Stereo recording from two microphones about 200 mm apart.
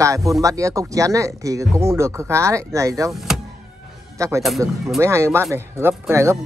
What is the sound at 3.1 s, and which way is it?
Speech, centre (ahead or behind).